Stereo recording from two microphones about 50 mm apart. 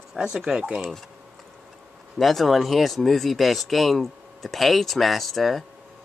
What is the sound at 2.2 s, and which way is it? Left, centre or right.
Speech, centre.